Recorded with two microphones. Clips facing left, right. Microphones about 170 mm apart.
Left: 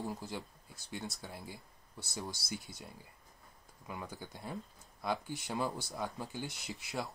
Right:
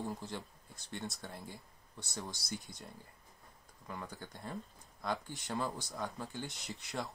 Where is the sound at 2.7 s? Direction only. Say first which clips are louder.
Even; 5° left (ahead or behind).